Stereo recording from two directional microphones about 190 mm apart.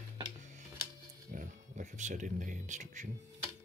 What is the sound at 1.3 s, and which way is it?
Speech, 40° right (ahead or behind).